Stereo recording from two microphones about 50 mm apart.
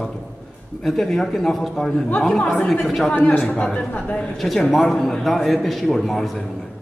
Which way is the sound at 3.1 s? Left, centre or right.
Left.